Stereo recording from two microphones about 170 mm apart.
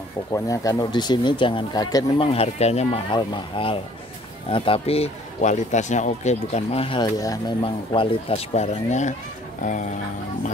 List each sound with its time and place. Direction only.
0.3 s speech: 20° left (ahead or behind)
2.3 s speech: 40° left (ahead or behind)